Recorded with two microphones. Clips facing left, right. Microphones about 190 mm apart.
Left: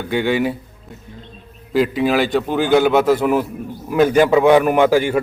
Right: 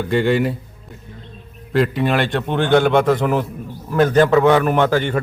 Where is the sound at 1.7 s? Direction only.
Centre (ahead or behind).